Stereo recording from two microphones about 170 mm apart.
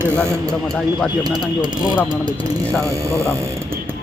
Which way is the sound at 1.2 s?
25° right (ahead or behind).